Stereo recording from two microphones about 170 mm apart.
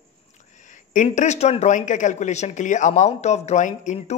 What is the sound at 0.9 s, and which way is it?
Speech, 45° left (ahead or behind).